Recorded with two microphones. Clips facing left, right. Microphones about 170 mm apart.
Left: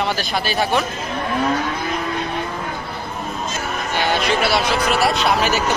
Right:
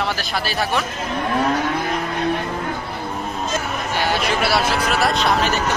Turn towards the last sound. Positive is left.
turn(degrees=5)  # may be behind; listen again after turning